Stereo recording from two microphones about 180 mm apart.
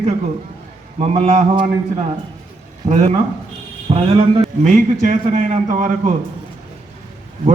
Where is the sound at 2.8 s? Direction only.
35° right (ahead or behind).